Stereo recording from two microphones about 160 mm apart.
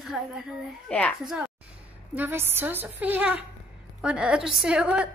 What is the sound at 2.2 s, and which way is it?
A woman's voice, 15° right (ahead or behind).